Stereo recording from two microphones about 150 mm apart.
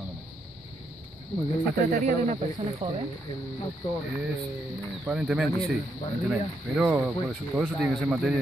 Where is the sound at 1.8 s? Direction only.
65° right (ahead or behind); by 3.0 s 45° right (ahead or behind).